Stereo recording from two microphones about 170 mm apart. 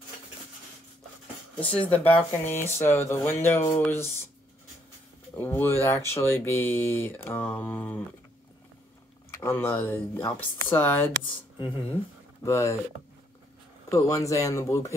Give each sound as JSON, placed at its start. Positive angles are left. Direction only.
{"t": 1.6, "sound": "speech", "side_deg": 10}
{"t": 5.3, "sound": "speech", "side_deg": 15}
{"t": 9.3, "sound": "speech", "side_deg": 15}
{"t": 12.4, "sound": "speech", "side_deg": 15}
{"t": 13.8, "sound": "speech", "side_deg": 20}